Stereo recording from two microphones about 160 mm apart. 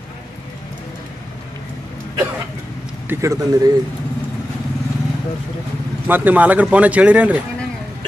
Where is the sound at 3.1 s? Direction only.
20° right (ahead or behind).